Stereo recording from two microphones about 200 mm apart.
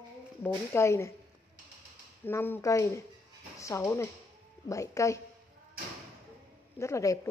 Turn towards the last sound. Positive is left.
turn(degrees=15)  # may be behind; listen again after turning